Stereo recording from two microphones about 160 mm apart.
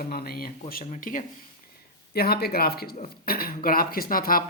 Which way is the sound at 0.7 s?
55° left (ahead or behind).